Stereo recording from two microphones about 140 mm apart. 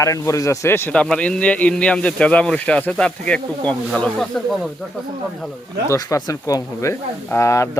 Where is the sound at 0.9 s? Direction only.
5° left (ahead or behind).